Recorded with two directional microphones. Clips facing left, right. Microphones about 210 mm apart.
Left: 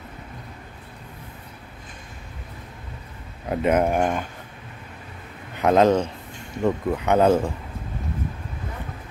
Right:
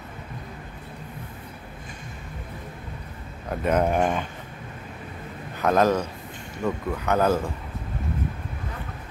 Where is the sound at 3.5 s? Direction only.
10° left (ahead or behind).